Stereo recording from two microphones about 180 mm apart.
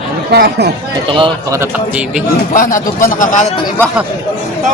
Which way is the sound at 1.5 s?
15° right (ahead or behind).